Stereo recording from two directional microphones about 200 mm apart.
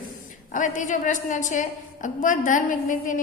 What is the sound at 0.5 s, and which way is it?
A woman's voice, 40° left (ahead or behind).